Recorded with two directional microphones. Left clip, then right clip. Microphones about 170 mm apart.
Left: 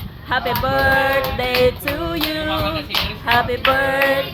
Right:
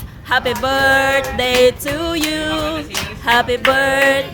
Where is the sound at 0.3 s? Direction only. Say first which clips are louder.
Right 3 dB; 65° right (ahead or behind).